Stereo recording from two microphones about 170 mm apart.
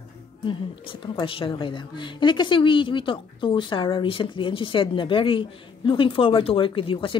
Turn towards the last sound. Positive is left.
turn(degrees=30)  # may be behind; listen again after turning